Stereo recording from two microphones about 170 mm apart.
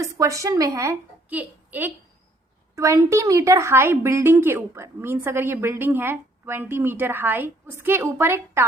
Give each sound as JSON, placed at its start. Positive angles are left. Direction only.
{"t": 0.0, "sound": "a woman's voice", "side_deg": -20}